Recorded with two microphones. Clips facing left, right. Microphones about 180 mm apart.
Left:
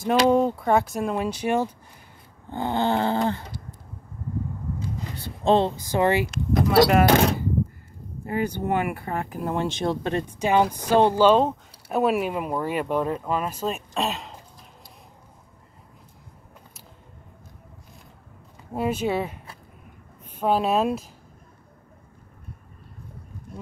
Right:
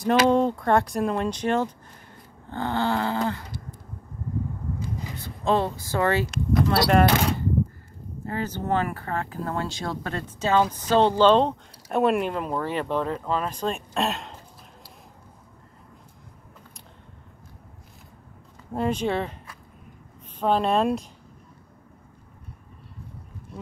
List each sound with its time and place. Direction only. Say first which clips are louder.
0.0 s speech: even; 5° right (ahead or behind)
2.5 s dog: left 2 dB; 15° left (ahead or behind)
5.1 s speech: left 4 dB; 30° left (ahead or behind)
6.9 s speech: left 2 dB; 5° left (ahead or behind)
18.7 s speech: even; 5° left (ahead or behind)